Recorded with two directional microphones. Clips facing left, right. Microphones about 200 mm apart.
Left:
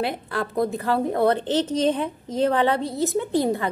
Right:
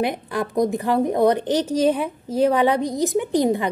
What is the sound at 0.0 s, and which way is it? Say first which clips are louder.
A woman's voice: right 3 dB; 15° right (ahead or behind).